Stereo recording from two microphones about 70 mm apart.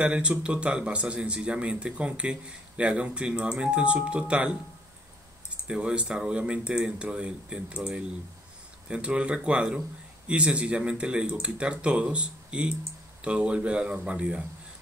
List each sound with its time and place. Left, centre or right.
0.0 s speech: centre
5.7 s speech: centre